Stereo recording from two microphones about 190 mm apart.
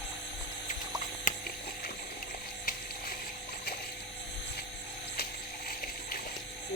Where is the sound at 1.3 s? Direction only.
50° left (ahead or behind).